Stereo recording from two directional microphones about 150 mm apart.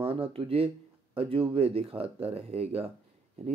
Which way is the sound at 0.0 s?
40° right (ahead or behind).